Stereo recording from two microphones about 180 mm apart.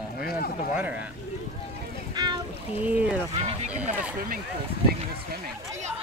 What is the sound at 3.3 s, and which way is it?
Speech, 35° right (ahead or behind).